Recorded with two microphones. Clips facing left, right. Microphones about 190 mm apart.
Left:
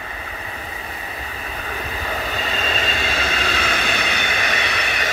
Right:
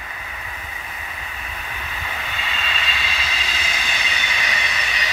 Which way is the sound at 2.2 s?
40° left (ahead or behind).